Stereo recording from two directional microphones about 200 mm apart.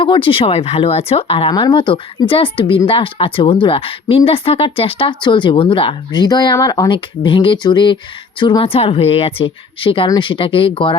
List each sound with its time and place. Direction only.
0.0 s speech: 25° left (ahead or behind)